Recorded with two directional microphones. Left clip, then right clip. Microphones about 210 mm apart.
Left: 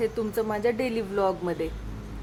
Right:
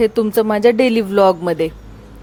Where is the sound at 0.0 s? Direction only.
40° right (ahead or behind).